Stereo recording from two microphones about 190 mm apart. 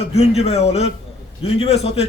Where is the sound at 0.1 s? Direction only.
35° left (ahead or behind).